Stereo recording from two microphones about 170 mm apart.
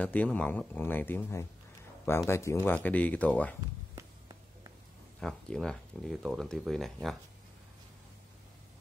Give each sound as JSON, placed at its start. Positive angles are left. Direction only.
{"t": 0.0, "sound": "speech", "side_deg": 10}
{"t": 3.6, "sound": "a sound", "side_deg": -20}
{"t": 5.2, "sound": "speech", "side_deg": 5}